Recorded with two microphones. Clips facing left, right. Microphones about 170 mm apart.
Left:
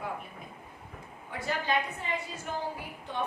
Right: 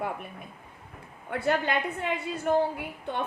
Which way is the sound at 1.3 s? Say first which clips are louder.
Right 5 dB; 60° right (ahead or behind).